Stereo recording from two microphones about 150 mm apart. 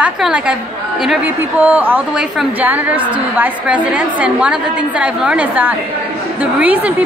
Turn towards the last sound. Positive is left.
turn(degrees=-10)  # may be behind; listen again after turning